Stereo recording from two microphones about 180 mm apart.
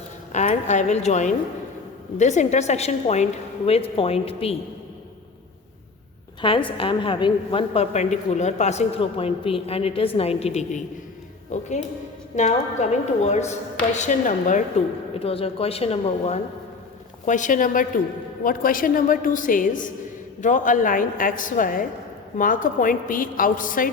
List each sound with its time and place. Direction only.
0.3 s a woman's voice: 40° left (ahead or behind)
6.4 s a woman's voice: 30° left (ahead or behind); by 14.6 s 45° left (ahead or behind)
15.2 s a woman's voice: 30° left (ahead or behind); by 23.9 s 50° left (ahead or behind)